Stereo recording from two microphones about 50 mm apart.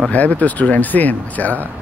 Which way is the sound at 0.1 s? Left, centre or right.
Left.